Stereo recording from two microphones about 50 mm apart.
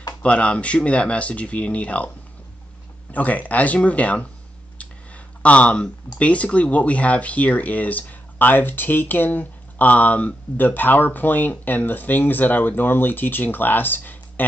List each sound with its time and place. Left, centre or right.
0.2 s speech: left
3.1 s speech: left
5.4 s speech: left